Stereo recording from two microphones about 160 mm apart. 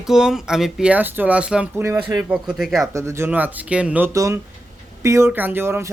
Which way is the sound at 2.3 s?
5° right (ahead or behind).